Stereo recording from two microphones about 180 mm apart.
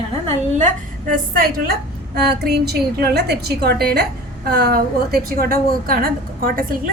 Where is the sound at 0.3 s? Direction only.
45° right (ahead or behind).